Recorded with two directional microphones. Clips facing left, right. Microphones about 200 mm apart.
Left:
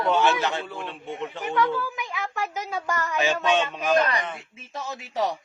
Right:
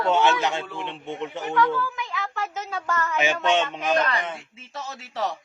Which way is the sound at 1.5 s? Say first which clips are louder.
Right 1 dB; 20° left (ahead or behind).